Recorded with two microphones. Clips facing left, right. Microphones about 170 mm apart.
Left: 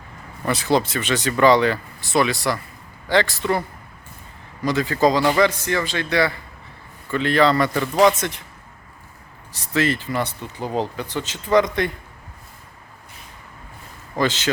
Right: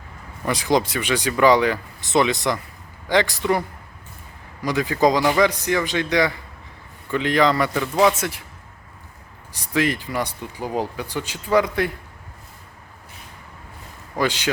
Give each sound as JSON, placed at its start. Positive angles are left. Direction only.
{"t": 0.4, "sound": "speech", "side_deg": -15}
{"t": 4.6, "sound": "speech", "side_deg": -15}
{"t": 9.5, "sound": "speech", "side_deg": -15}
{"t": 14.2, "sound": "speech", "side_deg": -10}